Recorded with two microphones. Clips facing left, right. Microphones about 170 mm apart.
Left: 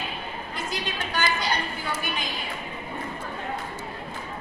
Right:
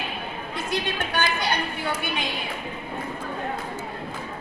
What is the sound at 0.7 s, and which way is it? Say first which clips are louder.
A woman's voice: right 5 dB; 55° right (ahead or behind).